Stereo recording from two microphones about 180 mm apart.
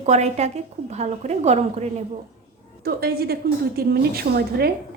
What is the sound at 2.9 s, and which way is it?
A woman's voice, 60° right (ahead or behind).